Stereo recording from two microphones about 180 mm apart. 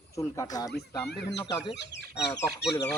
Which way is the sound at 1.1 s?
70° left (ahead or behind).